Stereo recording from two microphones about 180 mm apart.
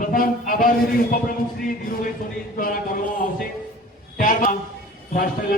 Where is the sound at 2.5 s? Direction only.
50° left (ahead or behind).